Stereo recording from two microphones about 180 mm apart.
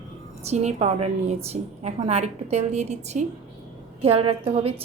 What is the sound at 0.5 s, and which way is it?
A woman's voice, 35° right (ahead or behind).